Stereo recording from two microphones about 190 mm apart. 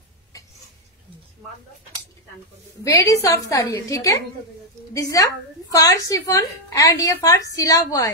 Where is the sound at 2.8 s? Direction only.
15° left (ahead or behind).